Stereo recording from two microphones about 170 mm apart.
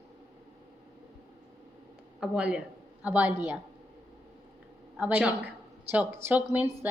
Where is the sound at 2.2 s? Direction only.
5° right (ahead or behind).